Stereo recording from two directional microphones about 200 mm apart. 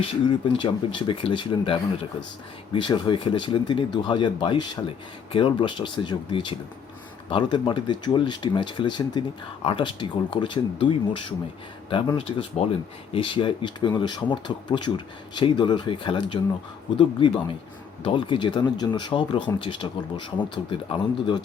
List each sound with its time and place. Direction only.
0.0 s speech: 25° left (ahead or behind)